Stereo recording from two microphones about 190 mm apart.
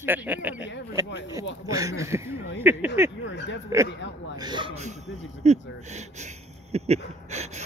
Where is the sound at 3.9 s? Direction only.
70° left (ahead or behind).